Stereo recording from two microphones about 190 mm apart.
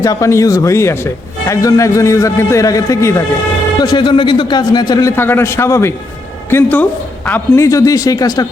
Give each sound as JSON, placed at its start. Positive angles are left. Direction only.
{"t": 0.0, "sound": "a man's voice", "side_deg": 15}